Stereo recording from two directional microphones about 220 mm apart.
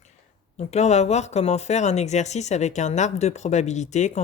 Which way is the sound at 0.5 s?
30° left (ahead or behind).